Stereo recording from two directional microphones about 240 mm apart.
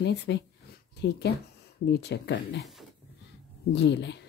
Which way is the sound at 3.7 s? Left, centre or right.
Left.